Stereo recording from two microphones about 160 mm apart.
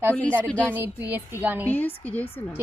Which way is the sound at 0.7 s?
10° right (ahead or behind).